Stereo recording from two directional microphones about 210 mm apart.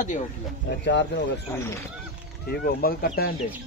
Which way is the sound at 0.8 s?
55° left (ahead or behind).